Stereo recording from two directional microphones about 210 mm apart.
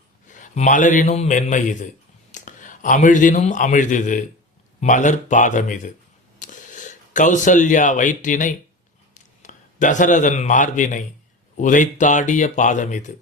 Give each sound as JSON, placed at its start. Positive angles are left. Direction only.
{"t": 0.3, "sound": "a man's voice", "side_deg": 35}